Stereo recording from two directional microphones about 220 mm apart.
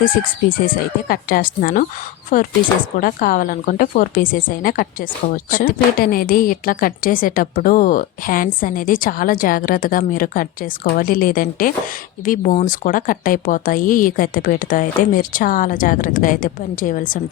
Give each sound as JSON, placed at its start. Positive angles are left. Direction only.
{"t": 0.0, "sound": "a woman's voice", "side_deg": 40}